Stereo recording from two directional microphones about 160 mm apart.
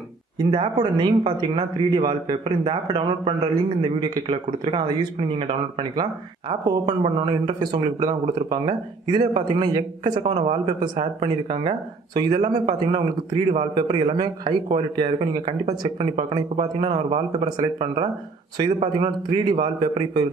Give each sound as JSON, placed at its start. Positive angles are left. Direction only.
{"t": 0.4, "sound": "a man's voice", "side_deg": -30}